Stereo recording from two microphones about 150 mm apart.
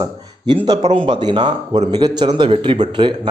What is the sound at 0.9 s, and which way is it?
A man's voice, 30° right (ahead or behind).